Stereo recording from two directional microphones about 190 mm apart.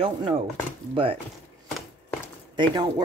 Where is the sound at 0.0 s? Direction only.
30° right (ahead or behind).